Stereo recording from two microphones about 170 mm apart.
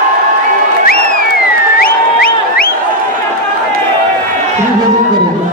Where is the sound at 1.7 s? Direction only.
60° left (ahead or behind).